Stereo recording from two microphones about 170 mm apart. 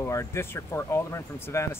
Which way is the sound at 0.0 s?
15° left (ahead or behind).